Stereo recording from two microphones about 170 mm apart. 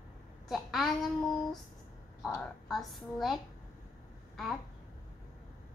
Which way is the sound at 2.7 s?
Centre (ahead or behind).